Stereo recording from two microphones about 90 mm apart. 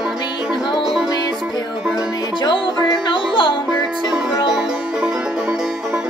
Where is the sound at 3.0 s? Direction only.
70° left (ahead or behind).